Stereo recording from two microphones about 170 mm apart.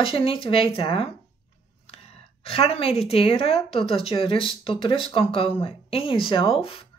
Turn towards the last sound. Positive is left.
turn(degrees=35)  # may be behind; listen again after turning